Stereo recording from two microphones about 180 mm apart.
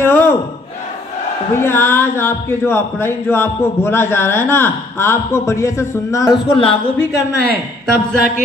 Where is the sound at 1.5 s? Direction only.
15° left (ahead or behind).